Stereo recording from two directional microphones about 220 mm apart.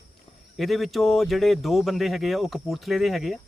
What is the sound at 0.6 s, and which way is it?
Speech, centre (ahead or behind).